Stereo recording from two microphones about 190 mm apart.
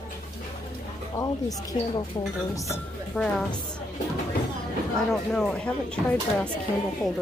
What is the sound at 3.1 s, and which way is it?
Speech, centre (ahead or behind).